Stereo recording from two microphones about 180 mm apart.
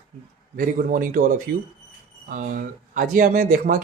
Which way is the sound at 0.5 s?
50° right (ahead or behind).